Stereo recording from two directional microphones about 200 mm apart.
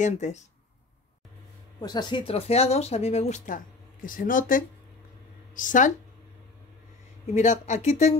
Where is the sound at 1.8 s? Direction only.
20° left (ahead or behind); by 5.9 s 40° left (ahead or behind).